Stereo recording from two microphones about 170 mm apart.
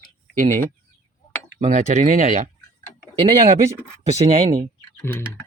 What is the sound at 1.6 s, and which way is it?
Speech, 45° right (ahead or behind).